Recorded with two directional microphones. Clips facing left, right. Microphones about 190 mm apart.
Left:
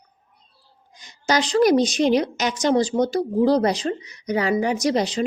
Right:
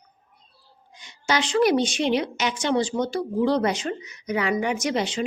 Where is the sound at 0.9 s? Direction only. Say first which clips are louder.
Left 3 dB; 40° left (ahead or behind).